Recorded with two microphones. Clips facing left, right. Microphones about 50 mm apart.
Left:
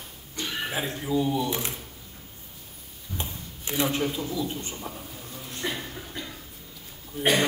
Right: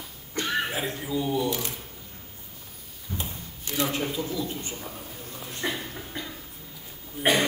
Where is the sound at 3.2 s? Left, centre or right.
Left.